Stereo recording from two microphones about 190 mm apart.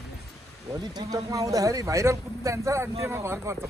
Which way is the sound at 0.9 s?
20° right (ahead or behind).